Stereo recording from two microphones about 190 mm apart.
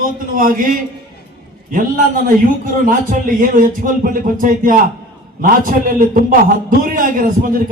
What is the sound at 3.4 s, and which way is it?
A man's voice, 45° right (ahead or behind).